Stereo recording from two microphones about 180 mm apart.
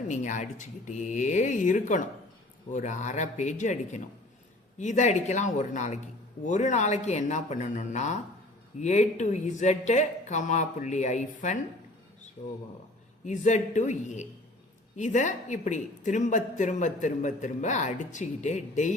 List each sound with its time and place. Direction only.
0.1 s speech: 40° left (ahead or behind)
13.2 s speech: 40° left (ahead or behind)